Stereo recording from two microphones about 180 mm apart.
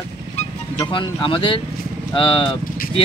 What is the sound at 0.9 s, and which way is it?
Speech, 30° left (ahead or behind).